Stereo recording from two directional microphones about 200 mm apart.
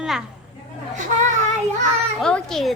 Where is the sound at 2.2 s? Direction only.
5° left (ahead or behind).